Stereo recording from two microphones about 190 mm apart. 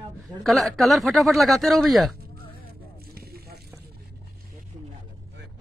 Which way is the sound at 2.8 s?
55° right (ahead or behind).